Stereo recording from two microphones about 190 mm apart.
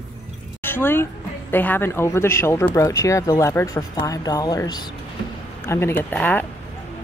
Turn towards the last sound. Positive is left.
turn(degrees=10)  # may be behind; listen again after turning